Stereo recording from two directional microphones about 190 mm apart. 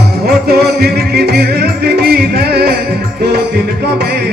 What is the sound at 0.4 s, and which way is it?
Music, 55° right (ahead or behind).